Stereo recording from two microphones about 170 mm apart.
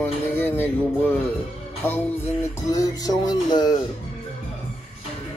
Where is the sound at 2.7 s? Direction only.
20° left (ahead or behind).